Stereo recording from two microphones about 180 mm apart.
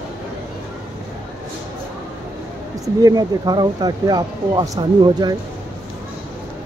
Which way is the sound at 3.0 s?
20° right (ahead or behind).